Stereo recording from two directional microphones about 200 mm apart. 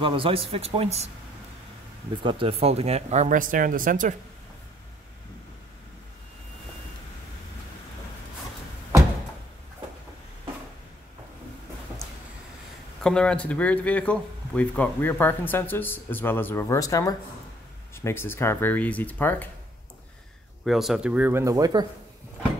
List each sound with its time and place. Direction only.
0.0 s speech: 25° right (ahead or behind)
2.2 s speech: 25° right (ahead or behind); by 4.1 s 40° right (ahead or behind)
13.0 s speech: 5° left (ahead or behind)
20.6 s speech: centre (ahead or behind); by 21.8 s 20° right (ahead or behind)